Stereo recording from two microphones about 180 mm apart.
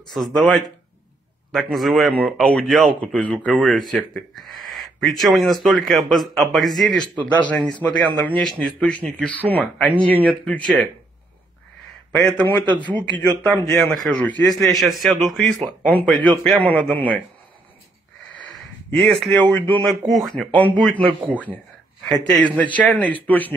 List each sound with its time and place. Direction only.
0.1 s a man's voice: centre (ahead or behind)
12.3 s a man's voice: 5° left (ahead or behind)
12.8 s speech: 25° right (ahead or behind)
13.4 s a man's voice: 5° left (ahead or behind)
18.3 s a man's voice: 5° left (ahead or behind)
22.0 s a man's voice: centre (ahead or behind)